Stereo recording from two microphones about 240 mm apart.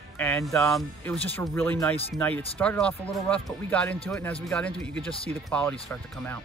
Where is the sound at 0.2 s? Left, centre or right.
Centre.